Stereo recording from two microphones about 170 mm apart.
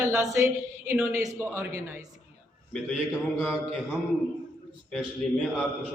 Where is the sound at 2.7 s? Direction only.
Centre (ahead or behind).